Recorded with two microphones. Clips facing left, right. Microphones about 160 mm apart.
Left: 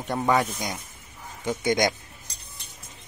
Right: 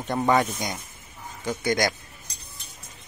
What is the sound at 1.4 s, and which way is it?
Speech, 20° left (ahead or behind).